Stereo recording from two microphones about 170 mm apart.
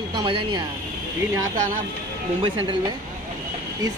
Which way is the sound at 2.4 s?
30° right (ahead or behind).